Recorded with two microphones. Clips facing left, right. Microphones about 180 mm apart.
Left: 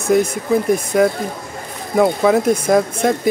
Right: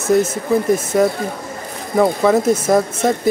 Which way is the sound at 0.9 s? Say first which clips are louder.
Even; centre (ahead or behind).